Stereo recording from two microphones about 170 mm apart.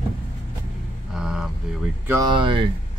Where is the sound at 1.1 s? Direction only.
5° right (ahead or behind).